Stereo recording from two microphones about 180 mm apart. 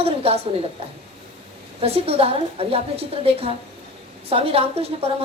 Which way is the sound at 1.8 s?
35° right (ahead or behind).